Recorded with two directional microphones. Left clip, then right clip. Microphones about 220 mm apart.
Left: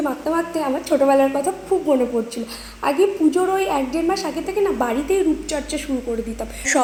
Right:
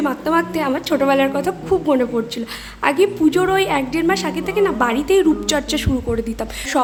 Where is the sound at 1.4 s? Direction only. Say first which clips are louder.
Right 2 dB; 10° right (ahead or behind).